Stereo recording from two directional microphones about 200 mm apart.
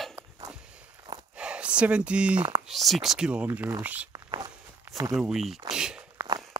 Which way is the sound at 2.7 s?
Centre (ahead or behind).